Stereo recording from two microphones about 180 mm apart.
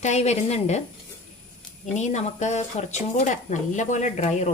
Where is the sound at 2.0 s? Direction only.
40° left (ahead or behind).